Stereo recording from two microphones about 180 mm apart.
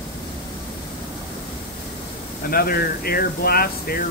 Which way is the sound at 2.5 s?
55° left (ahead or behind).